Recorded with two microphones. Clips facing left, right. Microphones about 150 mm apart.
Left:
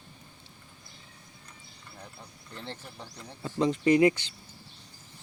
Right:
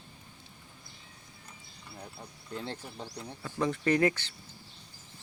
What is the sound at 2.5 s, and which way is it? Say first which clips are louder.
Speech: right 3 dB; 10° right (ahead or behind).